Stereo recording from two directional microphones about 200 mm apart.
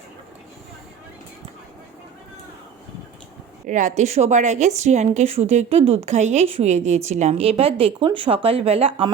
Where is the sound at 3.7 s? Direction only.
40° right (ahead or behind).